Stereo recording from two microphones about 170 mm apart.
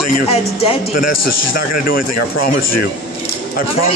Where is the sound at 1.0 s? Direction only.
55° left (ahead or behind).